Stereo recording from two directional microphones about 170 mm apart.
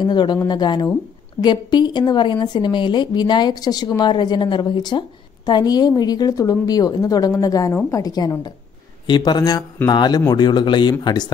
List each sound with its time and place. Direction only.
0.0 s a woman's voice: 25° left (ahead or behind)